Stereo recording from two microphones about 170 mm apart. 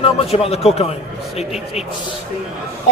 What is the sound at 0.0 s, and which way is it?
A man's voice, 35° left (ahead or behind).